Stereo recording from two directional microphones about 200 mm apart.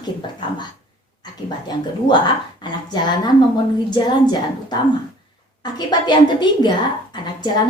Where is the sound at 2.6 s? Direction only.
20° left (ahead or behind).